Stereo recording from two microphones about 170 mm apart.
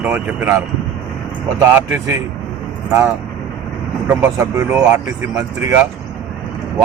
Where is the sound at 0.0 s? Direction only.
5° right (ahead or behind).